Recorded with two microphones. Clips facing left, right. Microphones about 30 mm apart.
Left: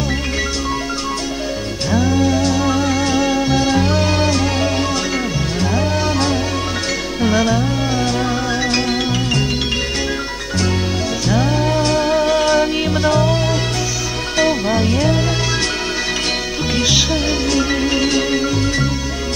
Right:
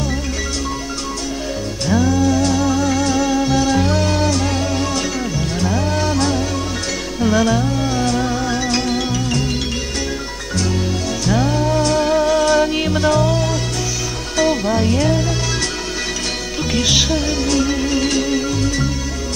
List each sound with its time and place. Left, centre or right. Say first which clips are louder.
1.9 s music: even; centre
7.3 s music: right 1 dB; centre
11.2 s music: even; centre
17.1 s music: left 1 dB; left